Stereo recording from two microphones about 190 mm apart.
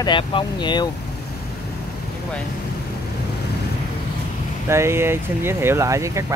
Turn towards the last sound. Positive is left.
turn(degrees=-15)  # may be behind; listen again after turning